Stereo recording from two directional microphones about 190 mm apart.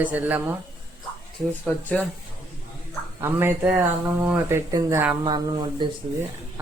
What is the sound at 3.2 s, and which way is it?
Speech, 10° right (ahead or behind).